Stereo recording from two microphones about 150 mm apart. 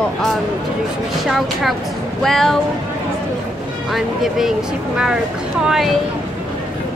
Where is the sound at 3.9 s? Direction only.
Centre (ahead or behind).